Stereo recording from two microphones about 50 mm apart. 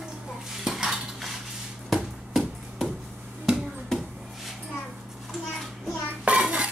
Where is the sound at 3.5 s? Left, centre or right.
Centre.